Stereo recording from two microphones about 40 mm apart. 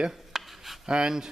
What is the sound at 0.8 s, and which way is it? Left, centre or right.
Speech, centre.